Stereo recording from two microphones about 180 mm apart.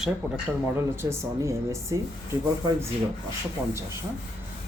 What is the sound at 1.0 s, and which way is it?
Speech, 15° right (ahead or behind).